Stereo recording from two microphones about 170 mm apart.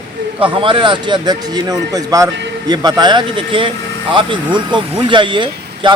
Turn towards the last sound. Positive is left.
turn(degrees=-30)  # may be behind; listen again after turning